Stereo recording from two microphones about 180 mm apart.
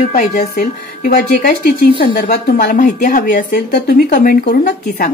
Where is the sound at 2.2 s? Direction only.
45° left (ahead or behind); by 5.1 s 60° left (ahead or behind).